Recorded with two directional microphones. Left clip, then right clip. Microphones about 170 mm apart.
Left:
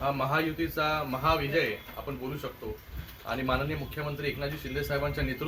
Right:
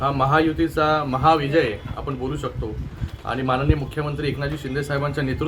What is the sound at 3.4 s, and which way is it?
A man's voice, 30° right (ahead or behind).